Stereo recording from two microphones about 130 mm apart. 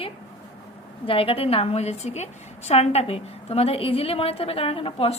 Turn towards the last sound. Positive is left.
turn(degrees=45)  # may be behind; listen again after turning